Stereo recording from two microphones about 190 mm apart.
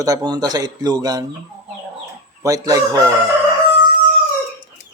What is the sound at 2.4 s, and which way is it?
Speech, 15° right (ahead or behind).